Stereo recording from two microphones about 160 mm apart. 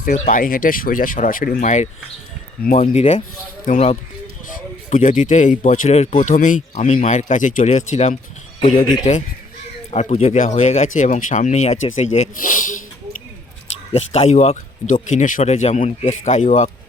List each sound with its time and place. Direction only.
0.0 s speech: 60° left (ahead or behind)
1.6 s speech: 50° left (ahead or behind)
13.9 s speech: 40° left (ahead or behind)